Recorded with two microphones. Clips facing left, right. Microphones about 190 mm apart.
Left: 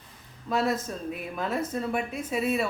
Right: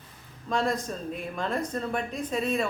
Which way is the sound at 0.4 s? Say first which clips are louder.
Left 1 dB; 5° left (ahead or behind).